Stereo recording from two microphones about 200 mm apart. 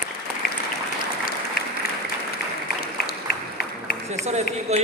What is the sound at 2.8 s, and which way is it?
Applause, 50° left (ahead or behind).